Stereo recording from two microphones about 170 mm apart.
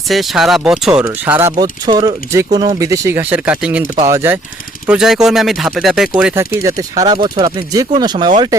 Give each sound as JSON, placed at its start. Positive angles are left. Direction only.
{"t": 0.1, "sound": "speech", "side_deg": 0}
{"t": 1.5, "sound": "speech", "side_deg": -25}
{"t": 4.9, "sound": "speech", "side_deg": -5}
{"t": 6.4, "sound": "speech", "side_deg": -20}